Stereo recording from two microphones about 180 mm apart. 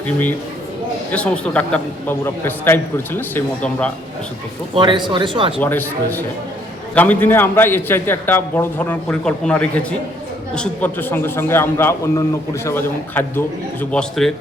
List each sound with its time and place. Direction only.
1.1 s a man's voice: 5° left (ahead or behind)
4.7 s speech: 25° right (ahead or behind)
5.5 s a man's voice: 10° left (ahead or behind)